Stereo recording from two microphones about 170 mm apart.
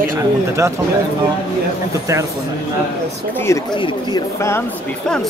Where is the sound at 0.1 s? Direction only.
15° right (ahead or behind).